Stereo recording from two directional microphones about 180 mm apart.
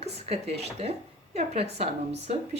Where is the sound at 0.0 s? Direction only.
35° right (ahead or behind).